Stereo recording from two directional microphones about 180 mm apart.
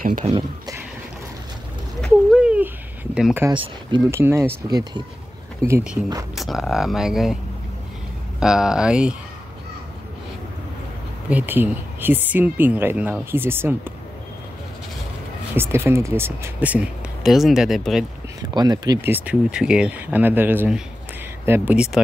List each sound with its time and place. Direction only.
0.0 s speech: 40° right (ahead or behind)
2.0 s a sound: centre (ahead or behind)
4.1 s speech: 15° right (ahead or behind)
6.3 s speech: centre (ahead or behind)
8.4 s speech: 5° right (ahead or behind)
11.2 s speech: 10° right (ahead or behind)
15.5 s speech: 15° right (ahead or behind)
18.4 s speech: 20° right (ahead or behind); by 22.0 s 5° right (ahead or behind)